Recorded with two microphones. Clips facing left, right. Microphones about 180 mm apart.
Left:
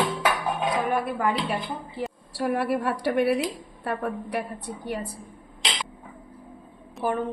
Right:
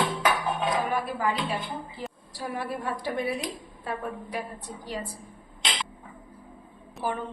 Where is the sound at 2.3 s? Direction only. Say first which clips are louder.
Left 8 dB; 70° left (ahead or behind).